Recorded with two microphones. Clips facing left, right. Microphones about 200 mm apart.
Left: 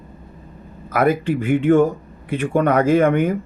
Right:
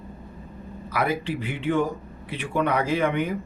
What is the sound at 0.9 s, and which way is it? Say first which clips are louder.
Speech: left 8 dB; 50° left (ahead or behind).